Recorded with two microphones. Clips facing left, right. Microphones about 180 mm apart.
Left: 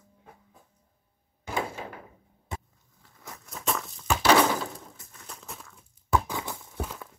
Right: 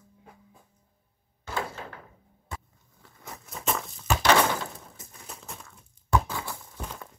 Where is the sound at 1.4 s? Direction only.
15° left (ahead or behind).